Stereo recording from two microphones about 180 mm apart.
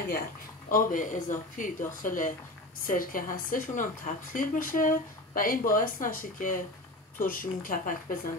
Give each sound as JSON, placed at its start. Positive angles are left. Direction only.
{"t": 0.7, "sound": "a woman's voice", "side_deg": 50}